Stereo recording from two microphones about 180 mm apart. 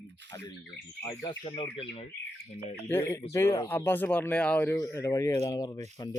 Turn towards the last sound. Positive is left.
turn(degrees=20)  # may be behind; listen again after turning